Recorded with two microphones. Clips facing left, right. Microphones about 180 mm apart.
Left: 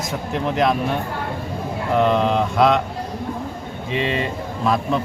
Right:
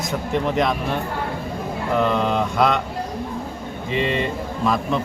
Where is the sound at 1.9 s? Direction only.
Centre (ahead or behind).